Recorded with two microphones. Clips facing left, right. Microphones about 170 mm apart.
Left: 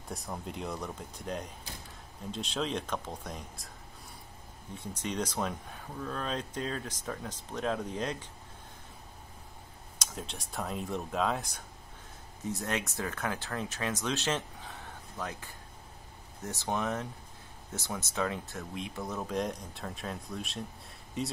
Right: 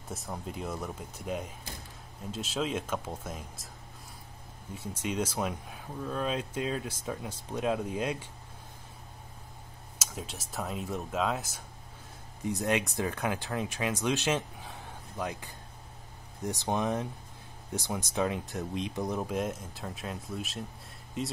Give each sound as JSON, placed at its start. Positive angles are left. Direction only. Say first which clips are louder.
{"t": 0.1, "sound": "speech", "louder": "right 1 dB", "side_deg": 0}
{"t": 4.7, "sound": "speech", "louder": "right 2 dB", "side_deg": -10}
{"t": 9.9, "sound": "speech", "louder": "right 1 dB", "side_deg": -5}
{"t": 12.4, "sound": "speech", "louder": "right 5 dB", "side_deg": -15}